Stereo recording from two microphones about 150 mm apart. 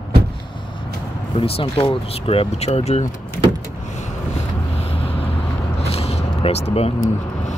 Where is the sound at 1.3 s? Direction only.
40° left (ahead or behind).